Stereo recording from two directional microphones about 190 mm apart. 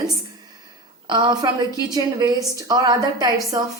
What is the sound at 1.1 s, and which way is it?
A woman's voice, 20° right (ahead or behind).